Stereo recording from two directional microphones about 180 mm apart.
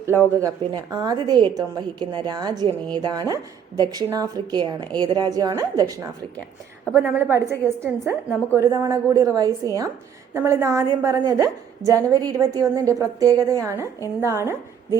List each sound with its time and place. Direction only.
0.3 s a woman's voice: 20° right (ahead or behind)
6.9 s a woman's voice: 10° right (ahead or behind)